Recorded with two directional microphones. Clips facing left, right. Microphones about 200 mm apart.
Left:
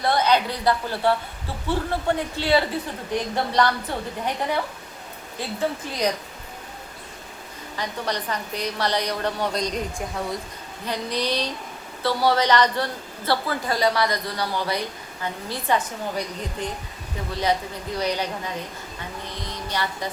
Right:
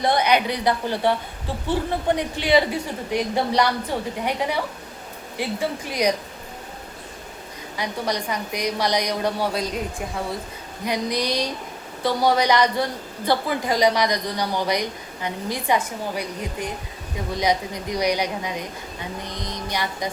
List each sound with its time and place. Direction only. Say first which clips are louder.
0.0 s a woman's voice: right 1 dB; 15° right (ahead or behind)
5.4 s a woman's voice: right 1 dB; 10° right (ahead or behind)
7.8 s a woman's voice: right 2 dB; 10° right (ahead or behind)
10.8 s a woman's voice: right 2 dB; 15° right (ahead or behind)